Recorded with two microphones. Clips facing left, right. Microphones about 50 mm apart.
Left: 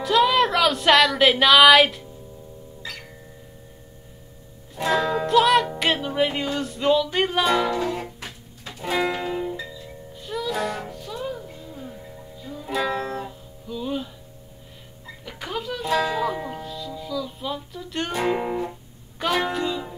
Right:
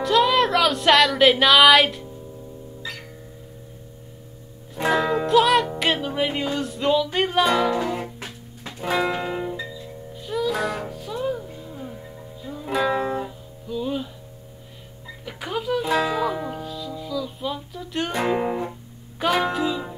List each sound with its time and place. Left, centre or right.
0.0 s music: centre
4.9 s music: centre
8.0 s music: right
13.2 s music: centre
15.2 s a sound: centre
15.9 s speech: right
16.4 s music: centre
18.4 s music: centre
18.7 s music: centre